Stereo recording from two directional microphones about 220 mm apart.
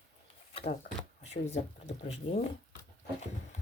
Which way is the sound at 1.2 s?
30° left (ahead or behind).